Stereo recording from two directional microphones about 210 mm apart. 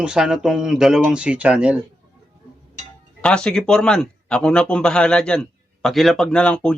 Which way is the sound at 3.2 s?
5° left (ahead or behind).